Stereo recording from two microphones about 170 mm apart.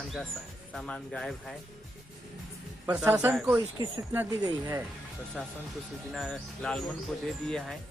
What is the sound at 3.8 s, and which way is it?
Speech, 20° right (ahead or behind).